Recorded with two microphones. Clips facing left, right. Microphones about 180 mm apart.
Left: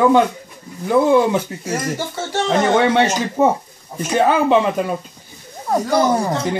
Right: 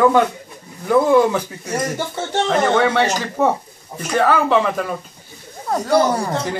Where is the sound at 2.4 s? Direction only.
15° left (ahead or behind).